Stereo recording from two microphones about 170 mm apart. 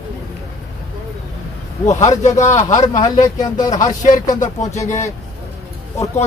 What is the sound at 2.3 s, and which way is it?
Speech, 20° left (ahead or behind).